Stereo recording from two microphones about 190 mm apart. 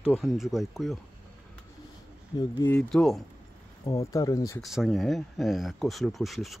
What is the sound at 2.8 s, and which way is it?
Speech, 5° left (ahead or behind).